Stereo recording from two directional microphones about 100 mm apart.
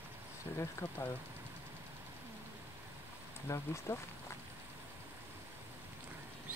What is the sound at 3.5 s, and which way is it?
Speech, 30° left (ahead or behind).